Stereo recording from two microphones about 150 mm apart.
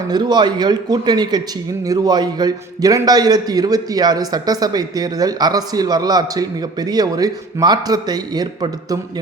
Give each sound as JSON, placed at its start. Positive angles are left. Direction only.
{"t": 0.1, "sound": "a man's voice", "side_deg": -30}